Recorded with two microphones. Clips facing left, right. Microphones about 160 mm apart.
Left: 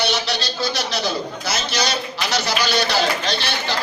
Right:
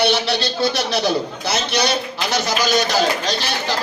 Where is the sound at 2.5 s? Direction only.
45° right (ahead or behind).